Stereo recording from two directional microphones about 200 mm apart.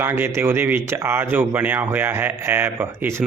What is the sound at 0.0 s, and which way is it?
Speech, 10° right (ahead or behind).